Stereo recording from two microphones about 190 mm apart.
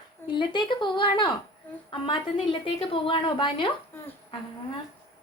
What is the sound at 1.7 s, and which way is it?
Speech, 10° left (ahead or behind).